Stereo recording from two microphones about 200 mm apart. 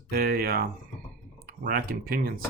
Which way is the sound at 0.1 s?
50° right (ahead or behind).